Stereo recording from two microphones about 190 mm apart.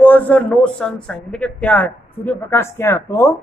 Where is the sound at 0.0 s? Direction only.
10° left (ahead or behind).